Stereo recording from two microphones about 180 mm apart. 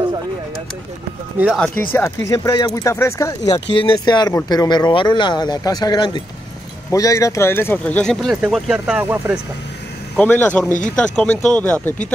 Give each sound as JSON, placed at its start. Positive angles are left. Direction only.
{"t": 1.4, "sound": "speech", "side_deg": 0}
{"t": 1.9, "sound": "speech", "side_deg": 15}
{"t": 10.1, "sound": "speech", "side_deg": 10}